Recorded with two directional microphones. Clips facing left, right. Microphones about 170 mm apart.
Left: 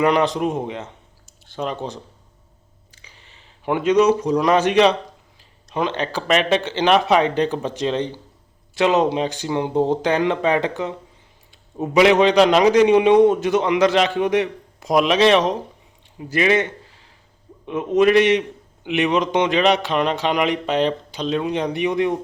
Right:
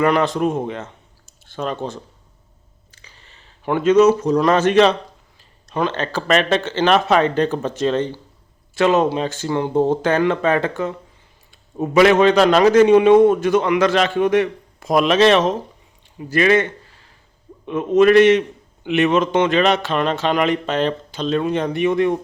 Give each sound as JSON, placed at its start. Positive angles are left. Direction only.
{"t": 0.0, "sound": "a man's voice", "side_deg": 15}
{"t": 17.9, "sound": "a man's voice", "side_deg": 15}